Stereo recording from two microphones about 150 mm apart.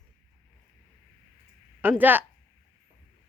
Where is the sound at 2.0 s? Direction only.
10° right (ahead or behind).